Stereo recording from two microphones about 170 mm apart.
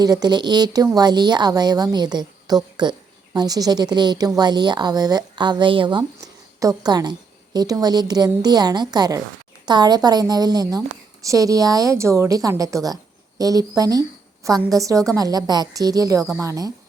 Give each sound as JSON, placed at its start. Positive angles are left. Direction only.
{"t": 0.0, "sound": "a woman's voice", "side_deg": -20}